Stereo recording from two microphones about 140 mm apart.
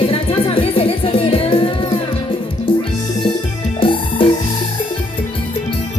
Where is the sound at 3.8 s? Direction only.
40° left (ahead or behind).